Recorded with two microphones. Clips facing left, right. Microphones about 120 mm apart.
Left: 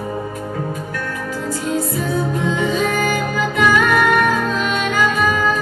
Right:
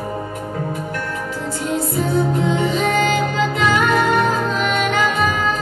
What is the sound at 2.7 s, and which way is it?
Music, 25° right (ahead or behind).